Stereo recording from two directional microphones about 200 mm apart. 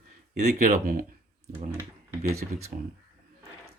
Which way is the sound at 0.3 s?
40° right (ahead or behind).